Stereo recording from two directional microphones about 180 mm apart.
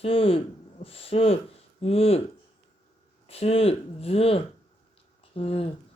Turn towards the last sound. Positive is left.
turn(degrees=35)  # may be behind; listen again after turning